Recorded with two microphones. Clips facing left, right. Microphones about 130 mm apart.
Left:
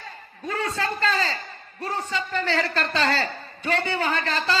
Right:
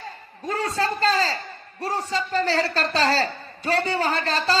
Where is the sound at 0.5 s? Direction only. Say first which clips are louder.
Right 2 dB; 35° right (ahead or behind).